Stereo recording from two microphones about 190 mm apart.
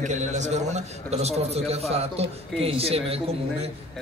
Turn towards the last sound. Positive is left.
turn(degrees=-30)  # may be behind; listen again after turning